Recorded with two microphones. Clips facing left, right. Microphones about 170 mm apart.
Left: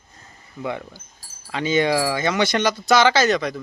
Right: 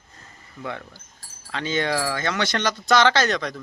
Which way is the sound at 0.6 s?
15° left (ahead or behind).